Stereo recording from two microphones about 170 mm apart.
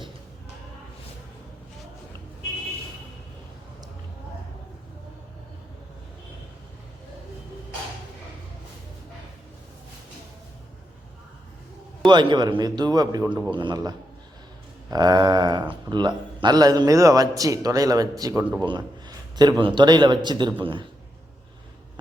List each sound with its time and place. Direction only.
12.0 s a man's voice: 25° right (ahead or behind)